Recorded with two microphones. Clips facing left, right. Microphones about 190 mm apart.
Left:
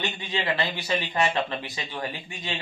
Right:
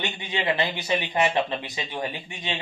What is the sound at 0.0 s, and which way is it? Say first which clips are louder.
Speech: right 1 dB; 20° right (ahead or behind).